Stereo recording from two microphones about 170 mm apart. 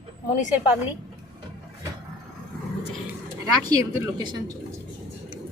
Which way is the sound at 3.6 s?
25° right (ahead or behind).